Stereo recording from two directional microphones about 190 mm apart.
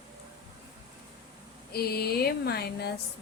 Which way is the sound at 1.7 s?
55° left (ahead or behind).